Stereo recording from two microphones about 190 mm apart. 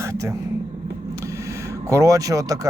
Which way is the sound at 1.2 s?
15° right (ahead or behind).